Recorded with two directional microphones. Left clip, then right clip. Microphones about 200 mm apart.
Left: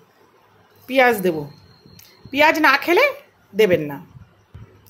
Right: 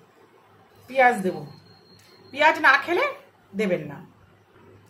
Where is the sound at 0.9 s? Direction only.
45° left (ahead or behind).